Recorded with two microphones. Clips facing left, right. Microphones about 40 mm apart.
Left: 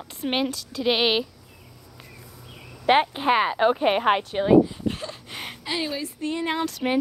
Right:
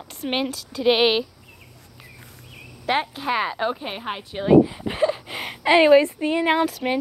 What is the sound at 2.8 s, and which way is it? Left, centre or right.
Speech, centre.